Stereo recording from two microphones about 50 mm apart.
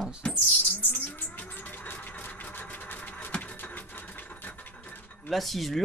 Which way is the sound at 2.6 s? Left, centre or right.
Left.